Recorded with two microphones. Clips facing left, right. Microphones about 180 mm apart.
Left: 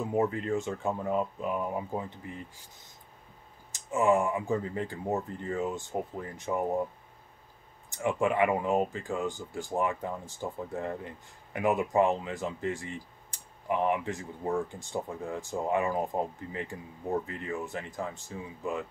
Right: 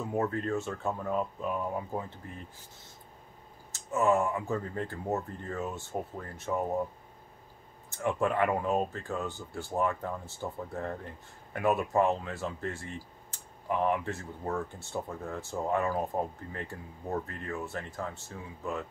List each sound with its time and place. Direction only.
0.0 s speech: 15° left (ahead or behind)
3.7 s speech: 15° left (ahead or behind)
7.9 s speech: 15° left (ahead or behind)